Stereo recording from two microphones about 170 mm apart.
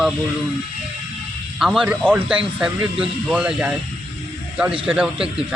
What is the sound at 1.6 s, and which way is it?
Speech, 5° right (ahead or behind).